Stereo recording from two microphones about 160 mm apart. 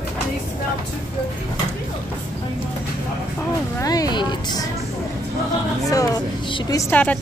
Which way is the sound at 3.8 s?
25° left (ahead or behind).